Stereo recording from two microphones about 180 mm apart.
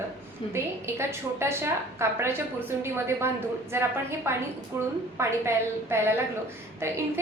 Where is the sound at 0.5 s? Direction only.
15° right (ahead or behind).